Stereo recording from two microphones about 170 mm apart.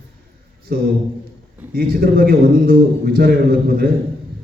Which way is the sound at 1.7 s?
65° right (ahead or behind).